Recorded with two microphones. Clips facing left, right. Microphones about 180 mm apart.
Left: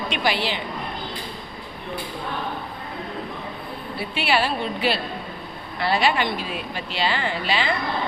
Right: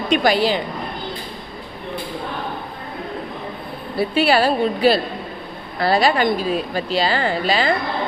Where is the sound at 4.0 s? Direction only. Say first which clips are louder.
Right 7 dB; 40° right (ahead or behind).